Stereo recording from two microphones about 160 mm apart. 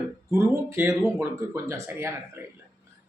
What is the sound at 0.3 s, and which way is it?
Speech, 15° right (ahead or behind).